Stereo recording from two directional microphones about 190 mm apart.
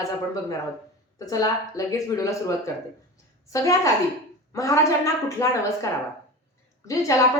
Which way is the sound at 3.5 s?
15° left (ahead or behind).